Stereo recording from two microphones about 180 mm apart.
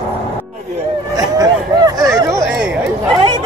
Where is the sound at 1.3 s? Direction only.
20° right (ahead or behind).